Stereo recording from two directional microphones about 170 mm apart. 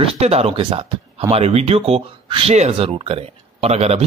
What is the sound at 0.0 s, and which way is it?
Speech, 35° right (ahead or behind).